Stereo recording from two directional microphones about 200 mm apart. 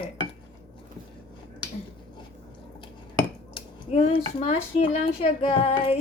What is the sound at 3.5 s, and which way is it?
Speech, 30° left (ahead or behind).